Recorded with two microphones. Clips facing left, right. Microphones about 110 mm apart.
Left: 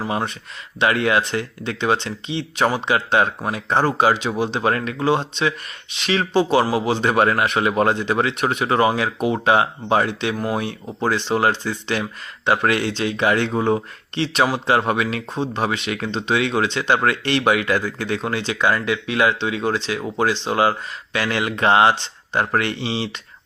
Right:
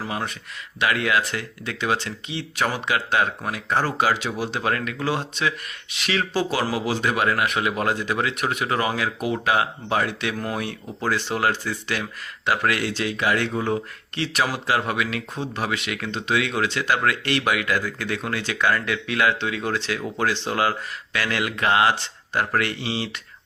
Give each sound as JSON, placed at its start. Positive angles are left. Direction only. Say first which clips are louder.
{"t": 0.1, "sound": "speech", "louder": "left 5 dB", "side_deg": 30}